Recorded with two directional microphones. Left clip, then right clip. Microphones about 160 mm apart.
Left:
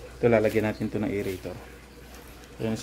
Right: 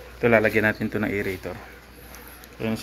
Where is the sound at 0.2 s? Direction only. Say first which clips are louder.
Right 3 dB; 20° left (ahead or behind).